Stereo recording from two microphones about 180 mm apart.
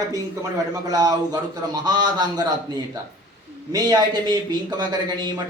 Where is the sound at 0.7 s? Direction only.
20° right (ahead or behind).